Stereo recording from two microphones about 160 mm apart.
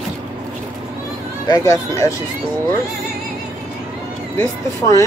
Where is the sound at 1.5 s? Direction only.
20° left (ahead or behind).